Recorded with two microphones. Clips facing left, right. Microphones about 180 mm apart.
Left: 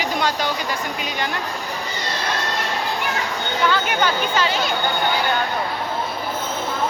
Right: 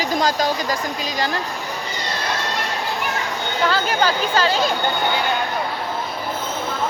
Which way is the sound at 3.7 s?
35° right (ahead or behind).